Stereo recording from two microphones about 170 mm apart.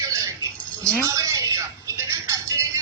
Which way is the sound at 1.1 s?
20° right (ahead or behind).